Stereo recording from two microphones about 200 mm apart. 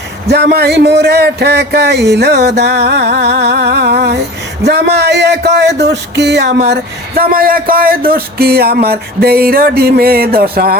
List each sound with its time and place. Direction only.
0.3 s speech: 55° right (ahead or behind)